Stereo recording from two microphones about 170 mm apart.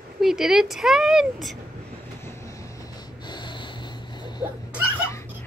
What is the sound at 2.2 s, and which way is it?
Snort, 15° left (ahead or behind).